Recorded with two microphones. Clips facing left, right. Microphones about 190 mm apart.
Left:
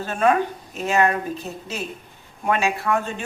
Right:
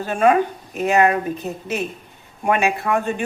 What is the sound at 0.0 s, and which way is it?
Speech, 10° right (ahead or behind).